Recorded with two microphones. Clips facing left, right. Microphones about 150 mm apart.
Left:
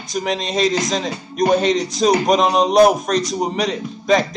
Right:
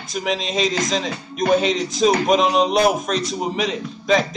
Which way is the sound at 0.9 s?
40° left (ahead or behind).